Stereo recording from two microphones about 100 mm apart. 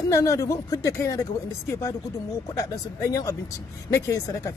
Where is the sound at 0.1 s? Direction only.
35° left (ahead or behind).